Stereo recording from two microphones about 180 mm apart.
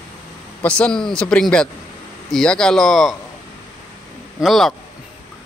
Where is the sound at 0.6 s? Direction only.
5° left (ahead or behind).